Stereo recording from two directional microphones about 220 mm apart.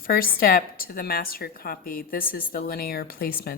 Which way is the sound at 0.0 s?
40° left (ahead or behind).